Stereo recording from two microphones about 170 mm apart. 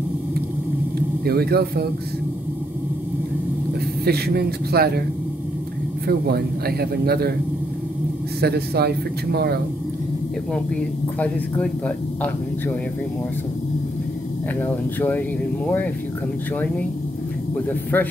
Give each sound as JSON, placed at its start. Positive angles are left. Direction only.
{"t": 1.2, "sound": "a man's voice", "side_deg": -65}
{"t": 4.0, "sound": "a man's voice", "side_deg": -70}
{"t": 6.0, "sound": "a man's voice", "side_deg": -65}
{"t": 8.4, "sound": "a man's voice", "side_deg": -70}
{"t": 11.1, "sound": "speech", "side_deg": 10}
{"t": 14.6, "sound": "speech", "side_deg": 10}
{"t": 17.9, "sound": "speech", "side_deg": 10}